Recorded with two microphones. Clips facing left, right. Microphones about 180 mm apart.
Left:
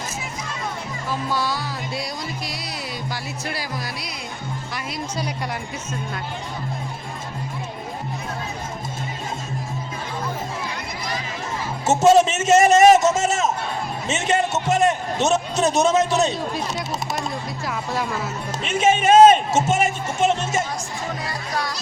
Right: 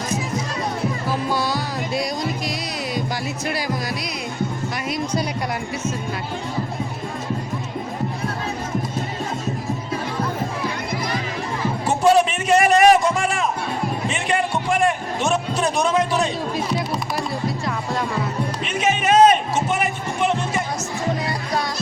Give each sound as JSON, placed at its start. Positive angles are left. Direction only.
{"t": 1.3, "sound": "music", "side_deg": -15}
{"t": 11.9, "sound": "a sound", "side_deg": 25}
{"t": 13.1, "sound": "music", "side_deg": 25}
{"t": 14.1, "sound": "a sound", "side_deg": 25}
{"t": 18.7, "sound": "speech", "side_deg": 25}
{"t": 20.2, "sound": "music", "side_deg": 25}
{"t": 21.2, "sound": "music", "side_deg": -25}